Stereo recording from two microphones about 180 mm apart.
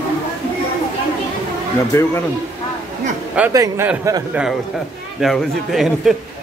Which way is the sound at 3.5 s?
20° right (ahead or behind).